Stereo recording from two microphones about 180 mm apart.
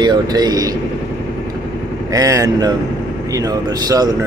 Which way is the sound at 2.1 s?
20° right (ahead or behind).